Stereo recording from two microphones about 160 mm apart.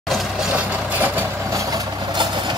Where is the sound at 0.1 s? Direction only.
5° right (ahead or behind).